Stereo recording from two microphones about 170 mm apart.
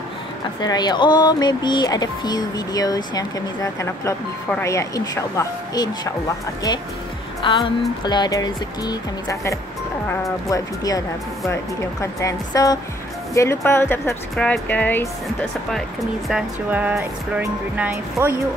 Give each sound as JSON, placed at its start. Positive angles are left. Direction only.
{"t": 0.6, "sound": "speech", "side_deg": 25}
{"t": 15.7, "sound": "speech", "side_deg": 0}